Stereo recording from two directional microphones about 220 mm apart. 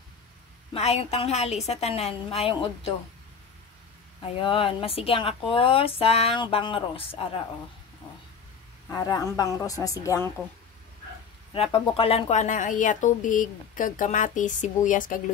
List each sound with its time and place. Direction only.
0.7 s speech: 30° left (ahead or behind)
4.2 s speech: 25° left (ahead or behind)
8.9 s a woman's voice: 15° left (ahead or behind)
11.5 s speech: 25° left (ahead or behind)